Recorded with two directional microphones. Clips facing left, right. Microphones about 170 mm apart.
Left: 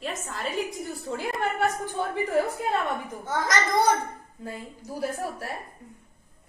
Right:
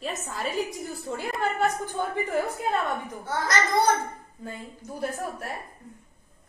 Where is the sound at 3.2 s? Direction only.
15° left (ahead or behind).